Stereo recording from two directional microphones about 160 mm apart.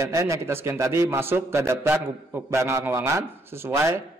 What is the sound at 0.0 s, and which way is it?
A man's voice, 20° right (ahead or behind).